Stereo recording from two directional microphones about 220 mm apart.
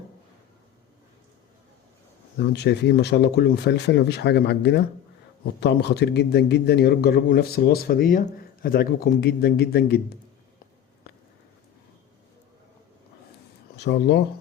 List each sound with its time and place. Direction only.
2.4 s a man's voice: 50° left (ahead or behind)
13.7 s a man's voice: 50° left (ahead or behind)